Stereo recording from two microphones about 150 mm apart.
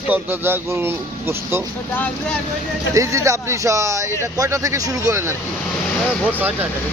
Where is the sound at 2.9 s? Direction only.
20° right (ahead or behind).